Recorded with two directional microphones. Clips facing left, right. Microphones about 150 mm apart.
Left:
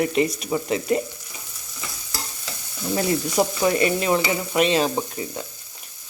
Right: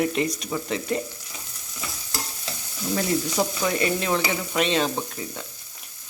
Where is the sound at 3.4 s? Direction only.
10° left (ahead or behind).